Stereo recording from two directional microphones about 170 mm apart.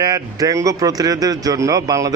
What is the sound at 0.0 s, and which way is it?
Speech, 20° right (ahead or behind).